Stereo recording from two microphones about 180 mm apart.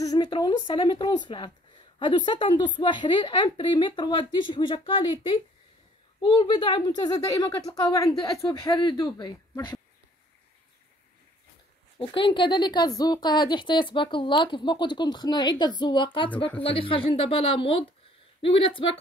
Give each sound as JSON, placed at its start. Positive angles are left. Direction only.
{"t": 0.0, "sound": "speech", "side_deg": 20}
{"t": 12.0, "sound": "speech", "side_deg": 30}